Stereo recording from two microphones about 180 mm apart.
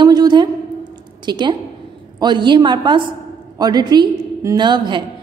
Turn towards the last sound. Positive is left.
turn(degrees=-25)  # may be behind; listen again after turning